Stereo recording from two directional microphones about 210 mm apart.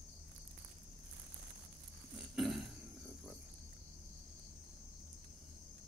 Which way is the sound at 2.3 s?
Centre (ahead or behind).